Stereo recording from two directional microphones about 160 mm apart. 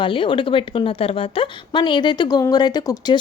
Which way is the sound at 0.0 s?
30° left (ahead or behind).